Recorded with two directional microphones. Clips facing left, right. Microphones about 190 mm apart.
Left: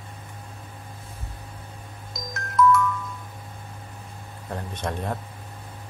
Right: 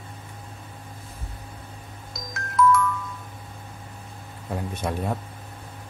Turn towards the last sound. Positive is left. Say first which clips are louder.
# right 2 dB
turn(degrees=-10)  # may be behind; listen again after turning